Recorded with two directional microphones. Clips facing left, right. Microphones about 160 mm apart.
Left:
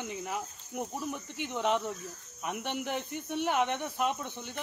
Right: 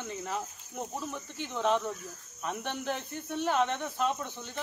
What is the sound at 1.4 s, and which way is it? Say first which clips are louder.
Insect: right 1 dB; 15° left (ahead or behind).